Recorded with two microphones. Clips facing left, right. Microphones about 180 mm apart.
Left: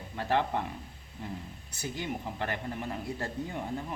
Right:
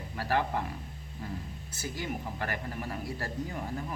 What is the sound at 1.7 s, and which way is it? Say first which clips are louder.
Speech: left 1 dB; 20° left (ahead or behind).